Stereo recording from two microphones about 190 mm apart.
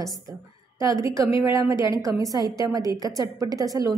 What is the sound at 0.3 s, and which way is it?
A woman's voice, 20° right (ahead or behind).